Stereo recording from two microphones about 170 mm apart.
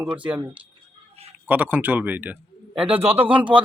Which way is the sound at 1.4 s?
10° right (ahead or behind).